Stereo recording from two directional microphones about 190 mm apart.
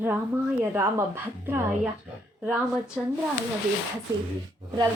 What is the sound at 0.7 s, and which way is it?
Speech, 10° right (ahead or behind).